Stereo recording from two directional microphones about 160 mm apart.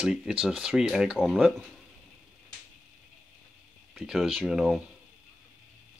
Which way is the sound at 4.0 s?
5° right (ahead or behind).